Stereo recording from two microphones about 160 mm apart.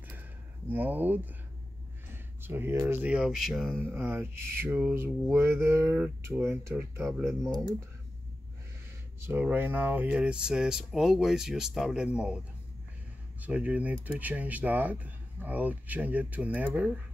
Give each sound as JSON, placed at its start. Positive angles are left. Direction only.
{"t": 0.7, "sound": "speech", "side_deg": -10}
{"t": 2.4, "sound": "speech", "side_deg": -15}
{"t": 3.8, "sound": "speech", "side_deg": -10}
{"t": 9.2, "sound": "speech", "side_deg": -15}
{"t": 13.4, "sound": "speech", "side_deg": -10}